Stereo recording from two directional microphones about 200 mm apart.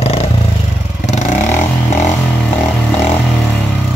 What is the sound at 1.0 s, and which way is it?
Vehicle, 35° left (ahead or behind).